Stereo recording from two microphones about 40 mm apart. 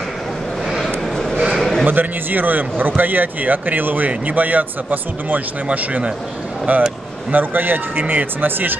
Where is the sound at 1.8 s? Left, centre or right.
Right.